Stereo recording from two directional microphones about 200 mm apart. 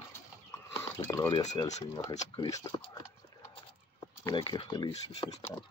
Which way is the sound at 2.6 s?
20° left (ahead or behind).